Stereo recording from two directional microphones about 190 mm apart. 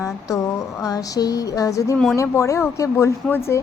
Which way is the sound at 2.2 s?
15° left (ahead or behind).